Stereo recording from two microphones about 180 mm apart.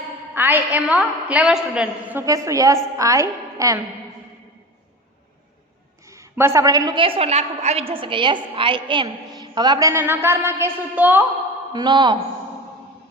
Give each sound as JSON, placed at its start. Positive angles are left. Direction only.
{"t": 0.3, "sound": "a woman's voice", "side_deg": -10}
{"t": 6.1, "sound": "a woman's voice", "side_deg": -15}
{"t": 11.7, "sound": "a woman's voice", "side_deg": -25}